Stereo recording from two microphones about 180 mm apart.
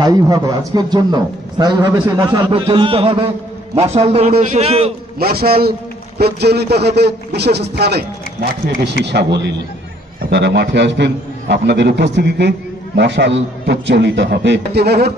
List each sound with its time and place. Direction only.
0.0 s a man's voice: 20° right (ahead or behind)
5.2 s a man's voice: 55° right (ahead or behind)